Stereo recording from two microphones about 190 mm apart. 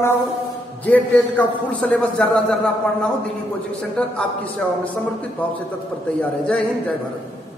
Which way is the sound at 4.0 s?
5° left (ahead or behind).